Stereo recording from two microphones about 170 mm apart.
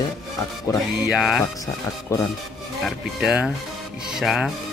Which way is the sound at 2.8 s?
5° right (ahead or behind).